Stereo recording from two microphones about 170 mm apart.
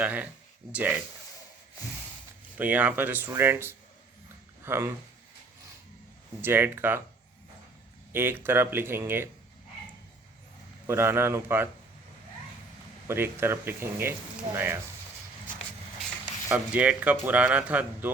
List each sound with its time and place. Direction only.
0.0 s speech: 10° right (ahead or behind)
2.6 s speech: 10° right (ahead or behind)
6.4 s speech: 15° right (ahead or behind)
8.1 s speech: 15° right (ahead or behind)
10.8 s speech: 15° right (ahead or behind)
13.1 s speech: 15° right (ahead or behind)
14.5 s speech: 40° right (ahead or behind)
16.5 s speech: 10° right (ahead or behind)